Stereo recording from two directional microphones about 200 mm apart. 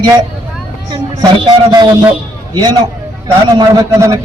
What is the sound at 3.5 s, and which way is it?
Speech, 20° right (ahead or behind).